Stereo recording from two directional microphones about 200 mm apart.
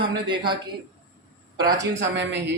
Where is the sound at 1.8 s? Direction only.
60° right (ahead or behind).